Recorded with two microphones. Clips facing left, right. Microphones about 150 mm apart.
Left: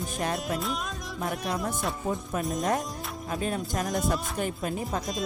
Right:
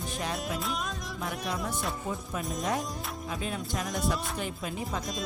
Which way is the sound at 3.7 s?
50° left (ahead or behind).